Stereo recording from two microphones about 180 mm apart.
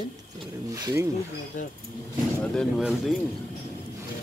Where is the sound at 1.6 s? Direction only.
45° left (ahead or behind).